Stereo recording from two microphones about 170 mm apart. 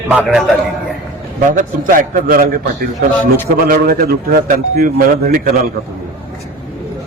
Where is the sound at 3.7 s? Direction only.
60° right (ahead or behind).